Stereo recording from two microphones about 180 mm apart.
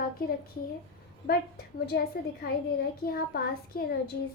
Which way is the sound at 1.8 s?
65° left (ahead or behind).